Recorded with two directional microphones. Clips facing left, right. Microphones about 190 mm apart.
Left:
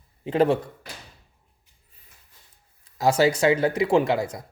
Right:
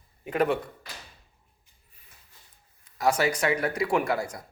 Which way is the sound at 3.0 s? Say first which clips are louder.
Left 5 dB; 25° left (ahead or behind).